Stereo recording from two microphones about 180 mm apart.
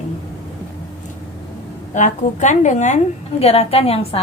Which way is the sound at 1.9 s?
40° left (ahead or behind).